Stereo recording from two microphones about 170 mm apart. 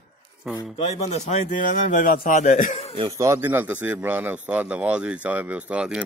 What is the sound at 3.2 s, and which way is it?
Speech, 15° right (ahead or behind).